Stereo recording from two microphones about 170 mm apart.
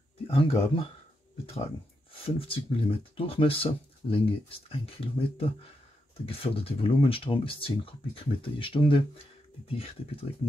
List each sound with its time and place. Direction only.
0.3 s speech: 35° left (ahead or behind)
2.2 s speech: 35° left (ahead or behind)